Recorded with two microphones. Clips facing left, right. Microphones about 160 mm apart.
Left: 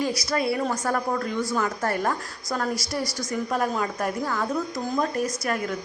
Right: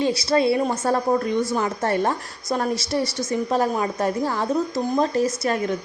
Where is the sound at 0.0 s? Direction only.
30° right (ahead or behind).